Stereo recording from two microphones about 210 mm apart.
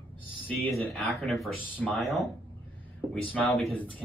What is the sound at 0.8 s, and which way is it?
Speech, centre (ahead or behind).